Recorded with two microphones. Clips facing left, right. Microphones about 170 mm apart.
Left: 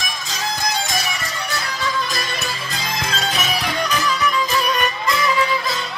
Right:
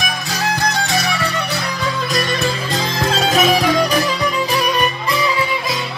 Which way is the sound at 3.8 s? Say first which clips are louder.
Right 4 dB; 35° right (ahead or behind).